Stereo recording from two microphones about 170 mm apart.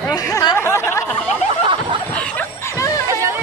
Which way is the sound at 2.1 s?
10° left (ahead or behind).